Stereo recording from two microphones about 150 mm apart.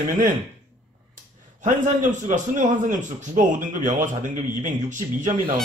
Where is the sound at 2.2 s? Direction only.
55° right (ahead or behind).